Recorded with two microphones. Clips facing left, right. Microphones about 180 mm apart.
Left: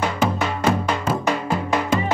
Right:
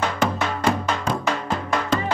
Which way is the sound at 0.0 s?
5° left (ahead or behind).